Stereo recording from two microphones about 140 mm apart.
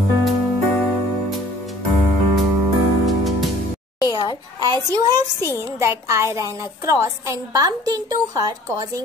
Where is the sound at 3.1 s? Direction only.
Centre (ahead or behind).